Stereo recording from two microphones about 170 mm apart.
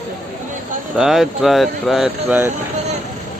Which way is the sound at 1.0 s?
5° right (ahead or behind).